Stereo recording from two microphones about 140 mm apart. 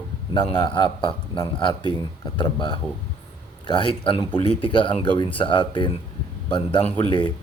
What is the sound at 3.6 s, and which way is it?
Speech, 35° left (ahead or behind).